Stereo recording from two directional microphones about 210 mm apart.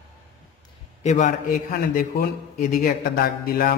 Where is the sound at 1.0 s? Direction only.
35° left (ahead or behind).